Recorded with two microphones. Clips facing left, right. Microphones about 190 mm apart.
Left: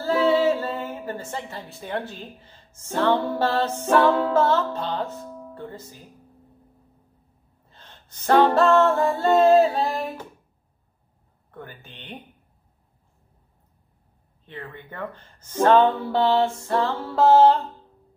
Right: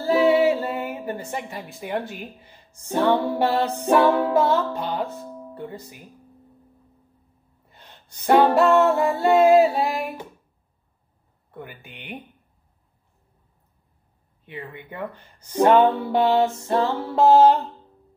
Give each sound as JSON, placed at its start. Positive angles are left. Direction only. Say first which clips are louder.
{"t": 0.0, "sound": "a woman's voice", "louder": "right 2 dB", "side_deg": -15}
{"t": 7.7, "sound": "music", "louder": "right 1 dB", "side_deg": -10}
{"t": 11.5, "sound": "speech", "louder": "right 2 dB", "side_deg": -10}
{"t": 14.4, "sound": "speech", "louder": "right 2 dB", "side_deg": -10}